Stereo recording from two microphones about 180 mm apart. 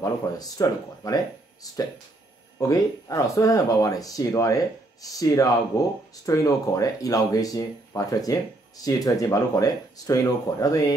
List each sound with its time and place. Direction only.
0.0 s speech: 20° left (ahead or behind)